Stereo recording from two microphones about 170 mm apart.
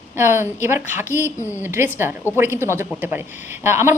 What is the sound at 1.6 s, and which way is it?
A woman's voice, 15° right (ahead or behind).